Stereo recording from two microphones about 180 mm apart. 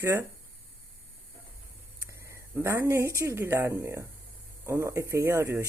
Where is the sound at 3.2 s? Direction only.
15° right (ahead or behind).